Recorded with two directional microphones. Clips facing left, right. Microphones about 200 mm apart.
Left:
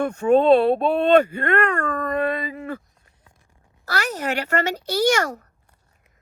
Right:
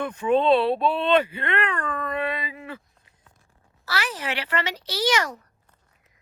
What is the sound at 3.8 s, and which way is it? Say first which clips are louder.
Speech: left 4 dB; 45° left (ahead or behind).